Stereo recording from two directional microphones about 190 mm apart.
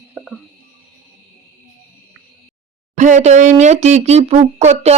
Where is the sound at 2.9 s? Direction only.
40° right (ahead or behind).